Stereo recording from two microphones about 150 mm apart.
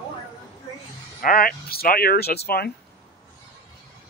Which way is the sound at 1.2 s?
75° left (ahead or behind).